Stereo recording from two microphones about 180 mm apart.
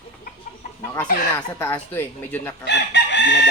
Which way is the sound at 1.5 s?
10° left (ahead or behind).